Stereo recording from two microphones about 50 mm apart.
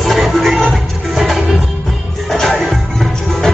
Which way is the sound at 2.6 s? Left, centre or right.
Centre.